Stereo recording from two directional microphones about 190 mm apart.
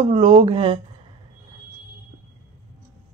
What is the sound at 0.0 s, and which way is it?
Speech, 30° right (ahead or behind).